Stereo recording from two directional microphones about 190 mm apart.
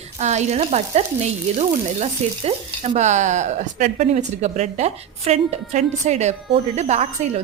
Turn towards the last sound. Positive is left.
turn(degrees=-35)  # may be behind; listen again after turning